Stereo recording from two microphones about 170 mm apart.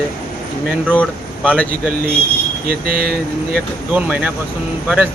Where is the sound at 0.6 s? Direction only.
10° right (ahead or behind).